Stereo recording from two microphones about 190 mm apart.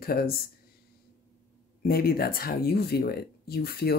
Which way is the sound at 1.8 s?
55° left (ahead or behind).